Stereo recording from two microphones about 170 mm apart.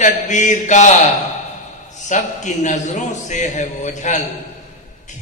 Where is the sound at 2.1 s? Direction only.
45° left (ahead or behind).